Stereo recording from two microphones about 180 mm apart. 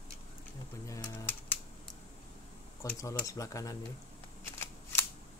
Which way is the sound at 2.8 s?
15° left (ahead or behind).